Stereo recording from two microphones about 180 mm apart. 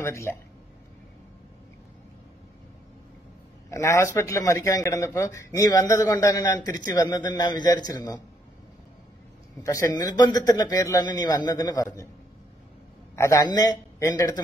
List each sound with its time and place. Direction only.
0.0 s speech: 15° left (ahead or behind)
3.7 s a man's voice: 15° left (ahead or behind)
9.6 s a man's voice: 20° left (ahead or behind)
13.1 s a man's voice: 15° left (ahead or behind)